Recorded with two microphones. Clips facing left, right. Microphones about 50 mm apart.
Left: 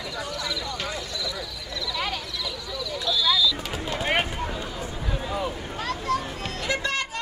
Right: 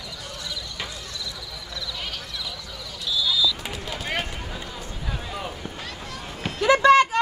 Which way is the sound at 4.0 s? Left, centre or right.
Left.